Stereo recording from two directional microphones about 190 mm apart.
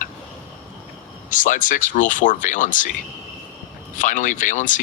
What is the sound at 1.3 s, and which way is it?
Speech, 45° left (ahead or behind).